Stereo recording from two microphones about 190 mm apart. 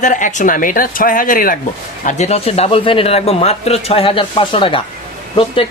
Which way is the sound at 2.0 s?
35° left (ahead or behind).